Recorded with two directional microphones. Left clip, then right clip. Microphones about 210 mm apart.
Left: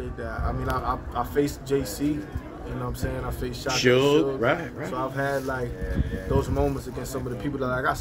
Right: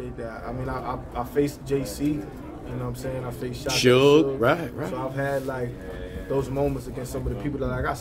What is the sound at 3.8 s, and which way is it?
Speech, 10° right (ahead or behind).